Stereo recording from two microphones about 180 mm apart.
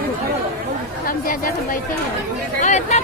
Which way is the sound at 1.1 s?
55° left (ahead or behind).